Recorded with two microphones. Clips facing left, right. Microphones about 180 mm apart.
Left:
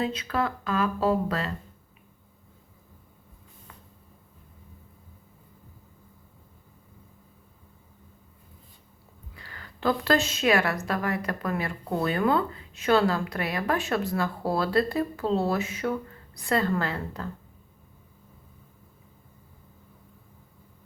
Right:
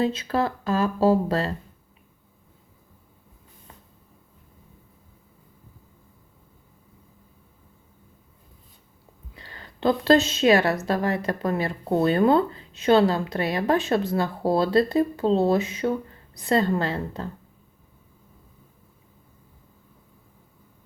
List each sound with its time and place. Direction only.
0.0 s speech: 30° right (ahead or behind)
9.3 s a woman's voice: 25° right (ahead or behind)